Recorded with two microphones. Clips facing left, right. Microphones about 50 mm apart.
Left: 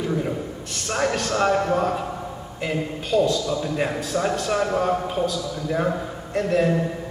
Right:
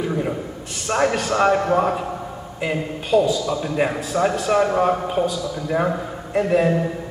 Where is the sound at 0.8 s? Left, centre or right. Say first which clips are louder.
Right 4 dB; centre.